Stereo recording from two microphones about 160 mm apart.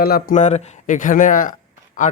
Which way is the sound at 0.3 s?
45° left (ahead or behind).